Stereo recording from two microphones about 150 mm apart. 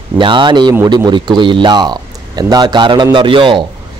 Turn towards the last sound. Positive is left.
turn(degrees=-35)  # may be behind; listen again after turning